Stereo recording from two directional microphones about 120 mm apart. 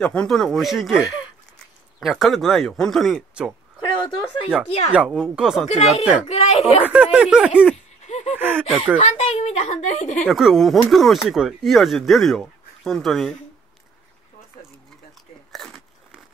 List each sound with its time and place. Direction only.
0.0 s speech: 10° left (ahead or behind)
4.6 s speech: 55° left (ahead or behind)
4.9 s speech: 5° right (ahead or behind)
5.7 s speech: 60° left (ahead or behind)
6.2 s a sound: 65° left (ahead or behind)
6.9 s speech: 10° right (ahead or behind)
7.7 s a sound: 75° left (ahead or behind)
8.4 s a sound: 15° right (ahead or behind)
8.6 s speech: 5° right (ahead or behind)
8.9 s a woman's voice: 60° left (ahead or behind); by 10.2 s 85° left
10.2 s speech: centre (ahead or behind)
15.5 s biting: 5° left (ahead or behind)